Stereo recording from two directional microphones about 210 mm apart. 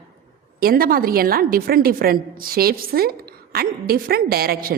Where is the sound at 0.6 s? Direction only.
45° right (ahead or behind).